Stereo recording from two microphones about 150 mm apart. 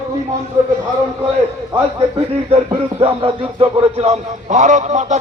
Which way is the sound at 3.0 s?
40° right (ahead or behind).